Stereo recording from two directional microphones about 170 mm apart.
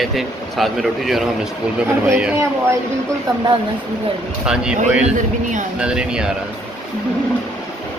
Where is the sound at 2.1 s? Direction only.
10° right (ahead or behind).